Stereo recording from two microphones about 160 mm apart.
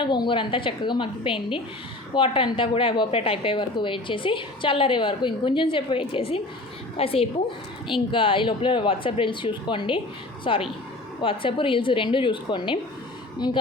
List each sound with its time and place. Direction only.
0.0 s a woman's voice: 30° left (ahead or behind)